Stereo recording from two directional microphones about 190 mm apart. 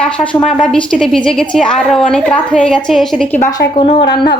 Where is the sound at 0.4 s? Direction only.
Centre (ahead or behind).